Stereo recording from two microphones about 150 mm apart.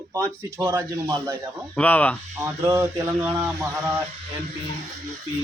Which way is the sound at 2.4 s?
15° right (ahead or behind).